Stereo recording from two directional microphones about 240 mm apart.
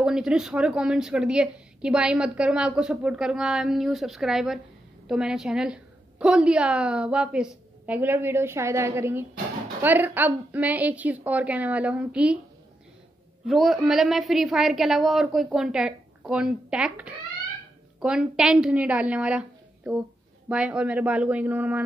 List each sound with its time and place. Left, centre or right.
0.0 s a woman's voice: centre
13.5 s a woman's voice: centre